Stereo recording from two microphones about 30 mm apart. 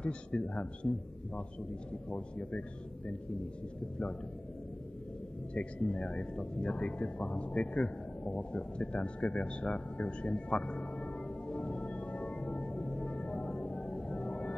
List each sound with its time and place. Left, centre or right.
0.0 s a man's voice: left
5.5 s speech: left
8.9 s music: left
13.7 s music: left
14.1 s music: left